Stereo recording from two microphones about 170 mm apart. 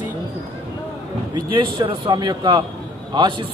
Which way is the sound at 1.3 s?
30° right (ahead or behind).